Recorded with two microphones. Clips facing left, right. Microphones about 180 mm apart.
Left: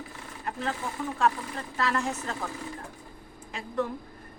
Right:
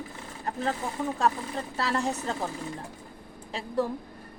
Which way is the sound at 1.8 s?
35° right (ahead or behind).